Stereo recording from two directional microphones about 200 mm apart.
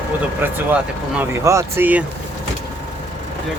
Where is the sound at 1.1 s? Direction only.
15° right (ahead or behind).